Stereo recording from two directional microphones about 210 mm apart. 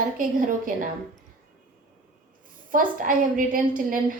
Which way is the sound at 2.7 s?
40° right (ahead or behind).